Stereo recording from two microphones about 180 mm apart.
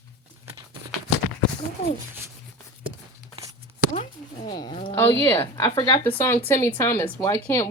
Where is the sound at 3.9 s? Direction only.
40° left (ahead or behind).